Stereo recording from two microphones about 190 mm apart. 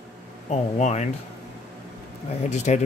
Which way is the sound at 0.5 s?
35° left (ahead or behind).